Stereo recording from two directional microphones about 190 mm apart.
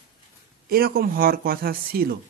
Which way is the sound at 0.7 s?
50° right (ahead or behind).